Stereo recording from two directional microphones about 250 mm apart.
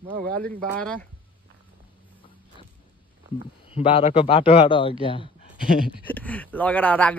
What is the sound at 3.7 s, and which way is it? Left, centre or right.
A man's voice, left.